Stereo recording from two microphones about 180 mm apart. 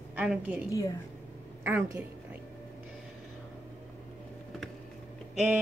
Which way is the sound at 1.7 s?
10° right (ahead or behind).